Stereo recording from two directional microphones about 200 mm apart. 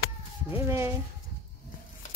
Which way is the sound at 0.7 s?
15° right (ahead or behind).